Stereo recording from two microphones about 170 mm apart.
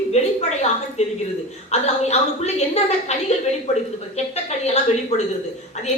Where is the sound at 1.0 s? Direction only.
40° left (ahead or behind).